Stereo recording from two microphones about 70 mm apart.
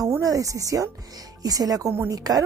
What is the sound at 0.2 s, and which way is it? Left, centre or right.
Speech, right.